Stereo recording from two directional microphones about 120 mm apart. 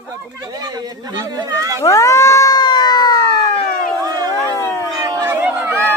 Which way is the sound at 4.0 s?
30° right (ahead or behind).